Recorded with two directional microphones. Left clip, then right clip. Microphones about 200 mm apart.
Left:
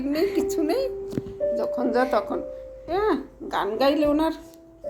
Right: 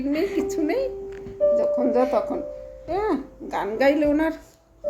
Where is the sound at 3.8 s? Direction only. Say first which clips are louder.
Right 2 dB; 35° right (ahead or behind).